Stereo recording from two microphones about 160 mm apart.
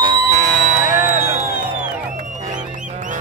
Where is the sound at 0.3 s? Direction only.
50° right (ahead or behind).